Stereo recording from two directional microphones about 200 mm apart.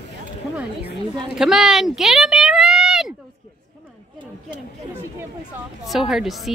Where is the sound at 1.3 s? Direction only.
Centre (ahead or behind).